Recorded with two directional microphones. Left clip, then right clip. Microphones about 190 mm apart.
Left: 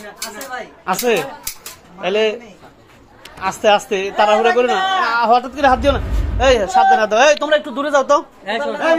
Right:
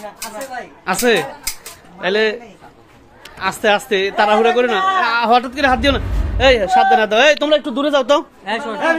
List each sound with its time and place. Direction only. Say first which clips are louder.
0.8 s a woman's voice: right 2 dB; 20° right (ahead or behind)
3.3 s a woman's voice: left 1 dB; 20° right (ahead or behind)
6.6 s a man's voice: even; 45° right (ahead or behind)
7.1 s a man's voice: even; 30° right (ahead or behind)